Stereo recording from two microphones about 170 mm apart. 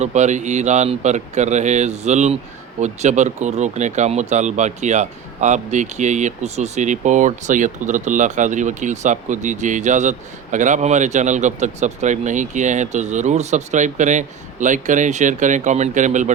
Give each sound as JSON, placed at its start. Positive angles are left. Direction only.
{"t": 0.0, "sound": "speech", "side_deg": -45}